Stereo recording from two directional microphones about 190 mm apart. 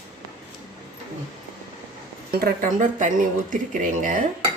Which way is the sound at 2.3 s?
55° right (ahead or behind).